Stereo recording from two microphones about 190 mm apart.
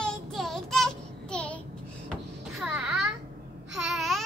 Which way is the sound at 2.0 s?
Centre (ahead or behind).